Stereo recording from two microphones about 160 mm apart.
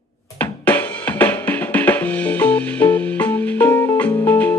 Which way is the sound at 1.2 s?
10° left (ahead or behind).